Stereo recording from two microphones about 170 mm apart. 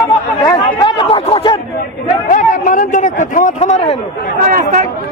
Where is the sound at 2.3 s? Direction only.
50° left (ahead or behind).